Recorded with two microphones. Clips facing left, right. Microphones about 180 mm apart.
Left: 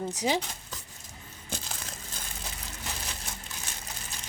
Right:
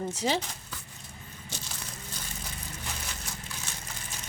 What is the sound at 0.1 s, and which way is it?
Speech, 15° left (ahead or behind).